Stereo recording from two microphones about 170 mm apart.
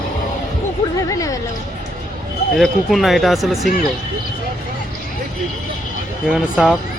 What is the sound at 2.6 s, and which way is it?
Speech, centre (ahead or behind).